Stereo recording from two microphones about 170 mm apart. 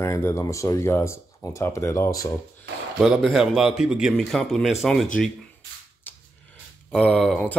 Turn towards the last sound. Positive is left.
turn(degrees=5)  # may be behind; listen again after turning